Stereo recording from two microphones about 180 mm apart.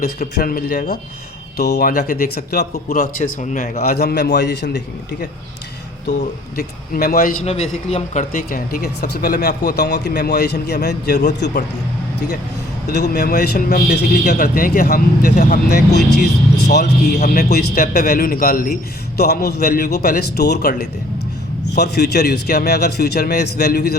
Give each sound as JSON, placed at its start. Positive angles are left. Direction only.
{"t": 0.3, "sound": "speech", "side_deg": 55}
{"t": 1.9, "sound": "speech", "side_deg": 50}
{"t": 3.9, "sound": "speech", "side_deg": 65}
{"t": 6.6, "sound": "speech", "side_deg": 55}
{"t": 7.4, "sound": "speech", "side_deg": 35}
{"t": 12.9, "sound": "speech", "side_deg": 65}
{"t": 17.2, "sound": "speech", "side_deg": 45}
{"t": 21.8, "sound": "speech", "side_deg": 65}